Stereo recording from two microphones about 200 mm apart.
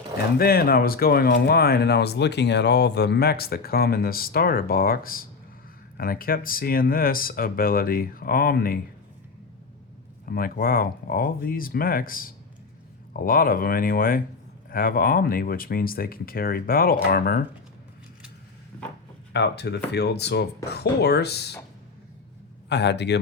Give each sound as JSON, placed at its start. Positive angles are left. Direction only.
{"t": 0.3, "sound": "speech", "side_deg": 50}
{"t": 10.2, "sound": "speech", "side_deg": 45}
{"t": 19.3, "sound": "speech", "side_deg": 60}
{"t": 22.7, "sound": "speech", "side_deg": 60}